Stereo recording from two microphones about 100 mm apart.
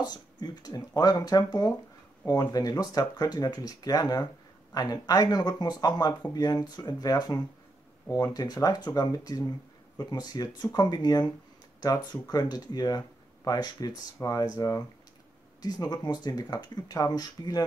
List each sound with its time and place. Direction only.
0.0 s speech: 45° left (ahead or behind)
15.6 s speech: 40° left (ahead or behind)